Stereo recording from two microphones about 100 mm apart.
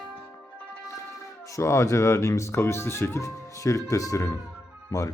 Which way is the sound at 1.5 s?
30° left (ahead or behind).